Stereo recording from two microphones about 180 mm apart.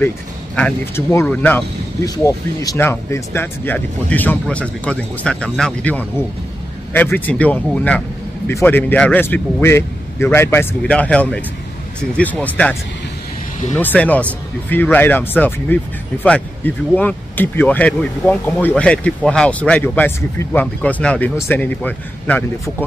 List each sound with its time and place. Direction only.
0.6 s speech: 10° left (ahead or behind)
2.0 s speech: 20° left (ahead or behind)
13.7 s speech: 10° left (ahead or behind)